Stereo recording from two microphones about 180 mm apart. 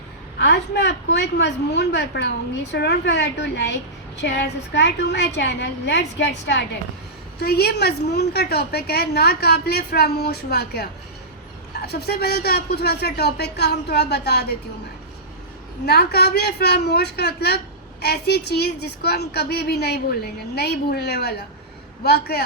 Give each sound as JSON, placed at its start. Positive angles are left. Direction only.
{"t": 0.3, "sound": "a woman's voice", "side_deg": 70}
{"t": 7.3, "sound": "a woman's voice", "side_deg": 60}
{"t": 11.9, "sound": "a woman's voice", "side_deg": 60}
{"t": 15.9, "sound": "a woman's voice", "side_deg": 60}